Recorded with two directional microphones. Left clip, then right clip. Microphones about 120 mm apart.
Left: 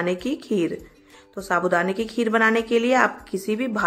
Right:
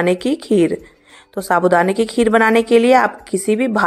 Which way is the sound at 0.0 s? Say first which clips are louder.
Right 8 dB; 45° right (ahead or behind).